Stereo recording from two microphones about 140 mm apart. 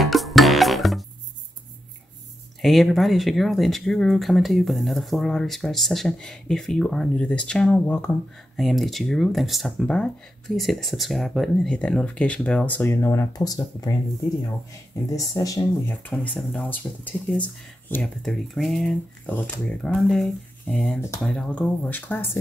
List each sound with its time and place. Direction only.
0.0 s music: centre (ahead or behind)
2.6 s speech: centre (ahead or behind)
8.5 s speech: centre (ahead or behind); by 13.9 s 25° left (ahead or behind)
15.0 s speech: 25° left (ahead or behind)
16.0 s speech: 10° left (ahead or behind)
18.0 s speech: centre (ahead or behind)